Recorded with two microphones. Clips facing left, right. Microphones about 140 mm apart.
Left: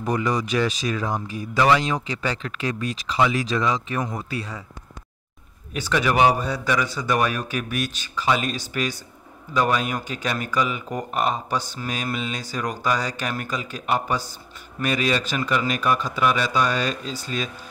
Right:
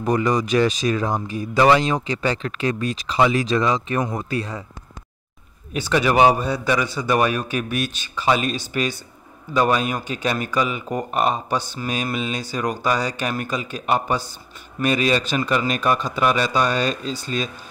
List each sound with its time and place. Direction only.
0.0 s speech: 45° right (ahead or behind)
1.7 s a man's voice: 30° right (ahead or behind)
3.5 s speech: 50° right (ahead or behind)
5.7 s a man's voice: 20° right (ahead or behind)